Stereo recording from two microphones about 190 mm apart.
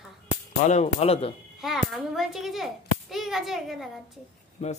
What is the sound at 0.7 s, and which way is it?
Speech, 35° left (ahead or behind).